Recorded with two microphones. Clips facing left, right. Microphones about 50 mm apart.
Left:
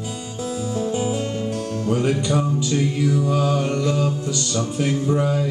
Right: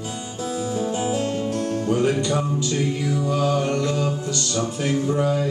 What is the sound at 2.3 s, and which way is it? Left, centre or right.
Music, centre.